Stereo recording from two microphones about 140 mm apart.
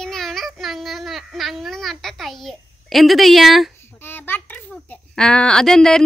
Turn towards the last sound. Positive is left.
turn(degrees=5)  # may be behind; listen again after turning